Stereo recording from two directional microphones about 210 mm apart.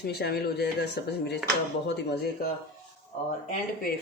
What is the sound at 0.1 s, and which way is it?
Speech, 50° left (ahead or behind).